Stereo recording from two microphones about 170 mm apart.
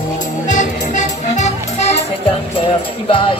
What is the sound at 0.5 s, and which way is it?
Music, 45° left (ahead or behind).